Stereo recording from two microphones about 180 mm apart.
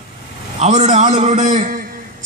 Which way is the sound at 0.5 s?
40° right (ahead or behind).